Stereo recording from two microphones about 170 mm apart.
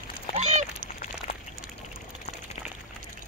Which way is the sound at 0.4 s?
45° right (ahead or behind).